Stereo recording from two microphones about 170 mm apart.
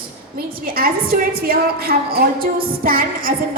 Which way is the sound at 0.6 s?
60° right (ahead or behind).